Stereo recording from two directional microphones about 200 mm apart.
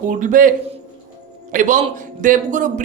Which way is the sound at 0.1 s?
40° right (ahead or behind).